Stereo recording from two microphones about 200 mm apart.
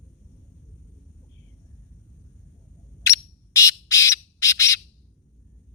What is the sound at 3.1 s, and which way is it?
Bird, 15° left (ahead or behind).